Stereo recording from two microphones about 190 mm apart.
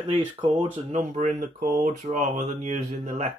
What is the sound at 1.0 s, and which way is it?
Speech, 45° right (ahead or behind).